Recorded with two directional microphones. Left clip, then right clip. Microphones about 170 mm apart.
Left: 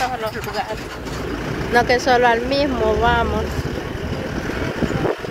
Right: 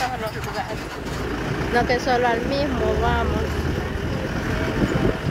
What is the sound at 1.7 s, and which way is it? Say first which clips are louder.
Speech: left 5 dB; 45° left (ahead or behind).